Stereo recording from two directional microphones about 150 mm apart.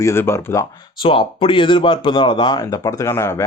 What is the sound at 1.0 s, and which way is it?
Speech, 35° left (ahead or behind).